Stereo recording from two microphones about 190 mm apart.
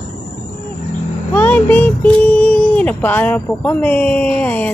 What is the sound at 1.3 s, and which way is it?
Speech, 10° left (ahead or behind).